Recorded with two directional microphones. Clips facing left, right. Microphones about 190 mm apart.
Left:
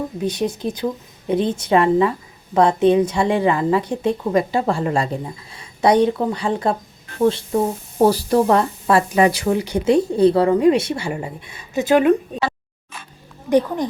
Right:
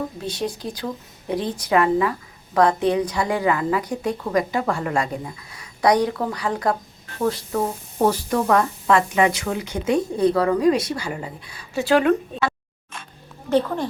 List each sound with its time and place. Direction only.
0.2 s a woman's voice: 20° left (ahead or behind)